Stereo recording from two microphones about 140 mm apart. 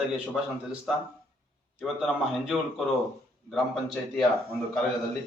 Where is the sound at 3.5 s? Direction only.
5° left (ahead or behind).